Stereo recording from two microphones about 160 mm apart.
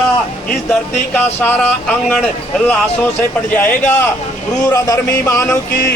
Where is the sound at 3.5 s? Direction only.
10° left (ahead or behind).